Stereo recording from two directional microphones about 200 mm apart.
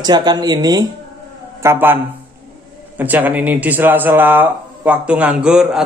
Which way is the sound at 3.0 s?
10° right (ahead or behind).